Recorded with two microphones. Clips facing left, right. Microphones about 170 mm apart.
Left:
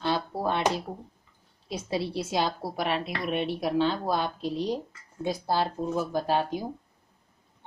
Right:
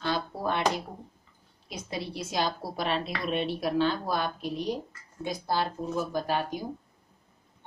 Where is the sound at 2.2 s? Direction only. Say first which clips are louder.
Even; 25° left (ahead or behind).